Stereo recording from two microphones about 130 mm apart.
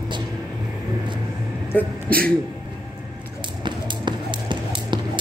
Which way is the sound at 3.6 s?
35° right (ahead or behind).